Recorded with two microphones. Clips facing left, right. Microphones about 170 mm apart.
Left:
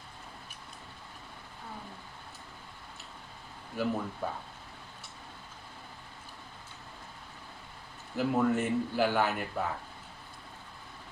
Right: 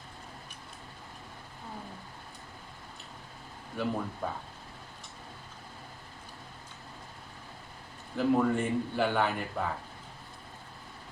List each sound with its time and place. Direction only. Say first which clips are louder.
3.8 s a man's voice: left 1 dB; 5° left (ahead or behind)
8.1 s a man's voice: right 1 dB; 5° left (ahead or behind)